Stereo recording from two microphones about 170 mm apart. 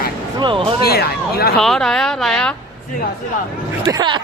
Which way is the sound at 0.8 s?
65° left (ahead or behind).